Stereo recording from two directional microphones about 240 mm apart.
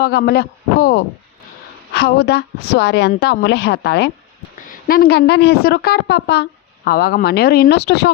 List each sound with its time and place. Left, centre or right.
0.0 s a woman's voice: left